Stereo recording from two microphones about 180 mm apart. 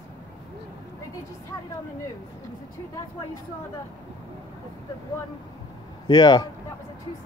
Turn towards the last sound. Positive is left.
turn(degrees=25)  # may be behind; listen again after turning